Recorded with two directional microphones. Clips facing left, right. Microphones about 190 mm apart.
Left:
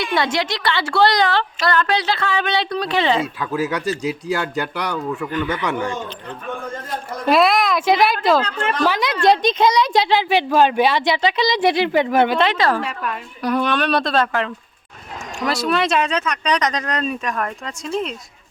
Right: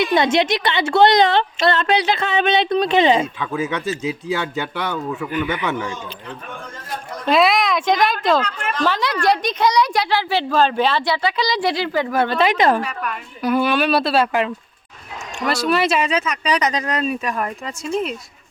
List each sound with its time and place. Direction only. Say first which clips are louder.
0.0 s a woman's voice: right 4 dB; 20° right (ahead or behind)
3.4 s speech: left 1 dB; centre (ahead or behind)
5.3 s speech: right 2 dB; 15° right (ahead or behind)
7.3 s speech: left 1 dB; centre (ahead or behind)
8.4 s a woman's voice: left 2 dB; 30° left (ahead or behind)
8.8 s a woman's voice: left 1 dB; 15° left (ahead or behind)
12.5 s a woman's voice: right 2 dB; 20° right (ahead or behind)
12.8 s a child's voice: even; 30° left (ahead or behind)
13.4 s speech: right 2 dB; 5° right (ahead or behind)
15.4 s speech: right 1 dB; centre (ahead or behind)